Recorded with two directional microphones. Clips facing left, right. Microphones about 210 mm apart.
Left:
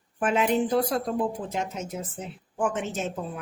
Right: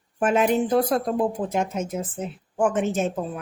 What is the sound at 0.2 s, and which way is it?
Speech, 45° right (ahead or behind).